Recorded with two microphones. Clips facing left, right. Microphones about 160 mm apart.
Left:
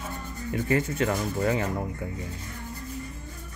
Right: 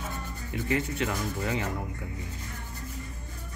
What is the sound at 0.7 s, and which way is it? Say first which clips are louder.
Speech: left 3 dB; 45° left (ahead or behind).